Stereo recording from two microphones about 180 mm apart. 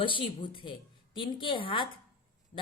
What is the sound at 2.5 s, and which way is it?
Speech, 40° left (ahead or behind).